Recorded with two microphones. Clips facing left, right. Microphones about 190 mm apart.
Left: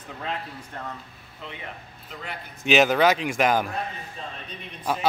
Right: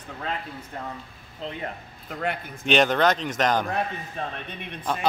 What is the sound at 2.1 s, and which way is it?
Speech, 55° right (ahead or behind).